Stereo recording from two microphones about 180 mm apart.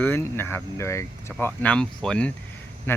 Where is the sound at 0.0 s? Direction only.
10° left (ahead or behind).